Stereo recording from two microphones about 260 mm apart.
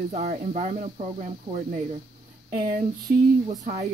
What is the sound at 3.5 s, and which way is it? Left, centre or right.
Speech, right.